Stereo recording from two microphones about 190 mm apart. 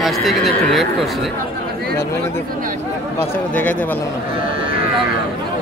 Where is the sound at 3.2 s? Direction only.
10° left (ahead or behind).